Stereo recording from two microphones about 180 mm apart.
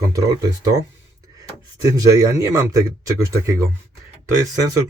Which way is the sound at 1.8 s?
20° right (ahead or behind).